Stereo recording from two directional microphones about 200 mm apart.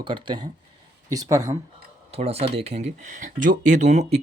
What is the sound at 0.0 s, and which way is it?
Speech, 25° right (ahead or behind).